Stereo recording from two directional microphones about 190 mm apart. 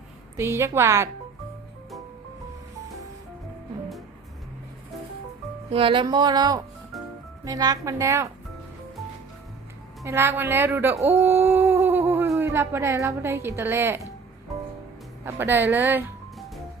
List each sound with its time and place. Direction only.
0.3 s a woman's voice: 15° right (ahead or behind)
5.7 s a woman's voice: 25° right (ahead or behind)
10.0 s a woman's voice: 15° right (ahead or behind)
11.1 s a sound: 10° right (ahead or behind)
12.4 s a woman's voice: 15° right (ahead or behind)
15.2 s a woman's voice: 10° right (ahead or behind)